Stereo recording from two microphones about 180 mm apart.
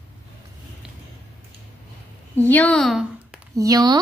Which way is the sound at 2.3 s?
10° left (ahead or behind).